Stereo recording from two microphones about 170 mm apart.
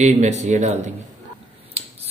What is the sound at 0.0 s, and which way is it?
Speech, 40° right (ahead or behind).